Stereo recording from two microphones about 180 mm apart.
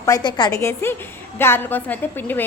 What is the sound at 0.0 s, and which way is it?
A woman's voice, 20° left (ahead or behind).